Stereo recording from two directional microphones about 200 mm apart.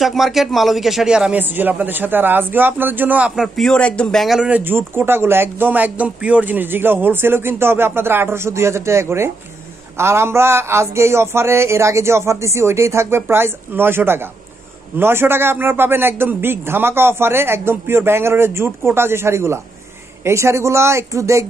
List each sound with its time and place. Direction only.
0.0 s a man's voice: centre (ahead or behind)